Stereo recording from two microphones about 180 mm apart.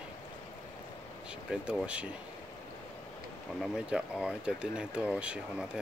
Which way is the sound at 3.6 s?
5° right (ahead or behind).